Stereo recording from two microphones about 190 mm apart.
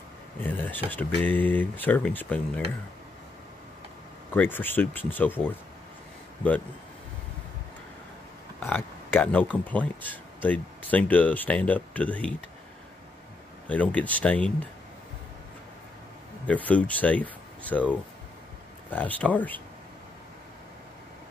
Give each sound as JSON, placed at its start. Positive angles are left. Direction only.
{"t": 0.4, "sound": "speech", "side_deg": 10}
{"t": 4.3, "sound": "speech", "side_deg": 10}
{"t": 8.5, "sound": "speech", "side_deg": 10}
{"t": 13.7, "sound": "speech", "side_deg": 5}
{"t": 16.4, "sound": "speech", "side_deg": 5}
{"t": 18.9, "sound": "speech", "side_deg": 10}